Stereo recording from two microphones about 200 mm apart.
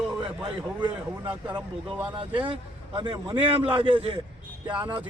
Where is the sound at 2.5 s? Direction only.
25° right (ahead or behind).